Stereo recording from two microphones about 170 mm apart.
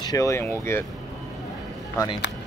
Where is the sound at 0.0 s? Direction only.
20° left (ahead or behind).